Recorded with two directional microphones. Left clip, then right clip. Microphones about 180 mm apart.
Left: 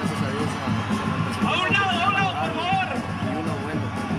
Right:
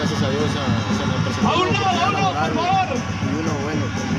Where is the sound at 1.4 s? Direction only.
25° right (ahead or behind).